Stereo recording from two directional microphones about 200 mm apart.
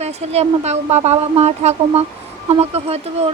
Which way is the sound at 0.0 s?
30° right (ahead or behind).